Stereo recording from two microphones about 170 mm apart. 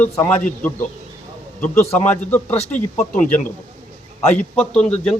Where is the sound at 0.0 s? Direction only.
10° left (ahead or behind).